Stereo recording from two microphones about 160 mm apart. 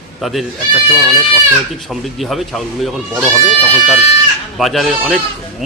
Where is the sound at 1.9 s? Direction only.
Centre (ahead or behind).